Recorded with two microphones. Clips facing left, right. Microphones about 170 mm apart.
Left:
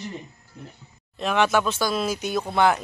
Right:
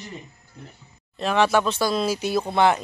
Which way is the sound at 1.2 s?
Centre (ahead or behind).